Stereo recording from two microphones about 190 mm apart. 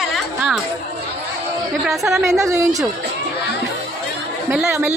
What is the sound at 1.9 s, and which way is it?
Speech, centre (ahead or behind).